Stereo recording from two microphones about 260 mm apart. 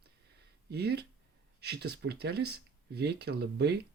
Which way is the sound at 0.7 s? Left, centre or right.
Right.